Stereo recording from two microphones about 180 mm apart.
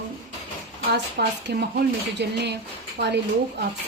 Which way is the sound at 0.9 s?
65° right (ahead or behind).